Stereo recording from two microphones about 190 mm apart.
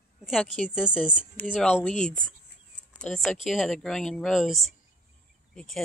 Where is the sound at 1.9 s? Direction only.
40° left (ahead or behind).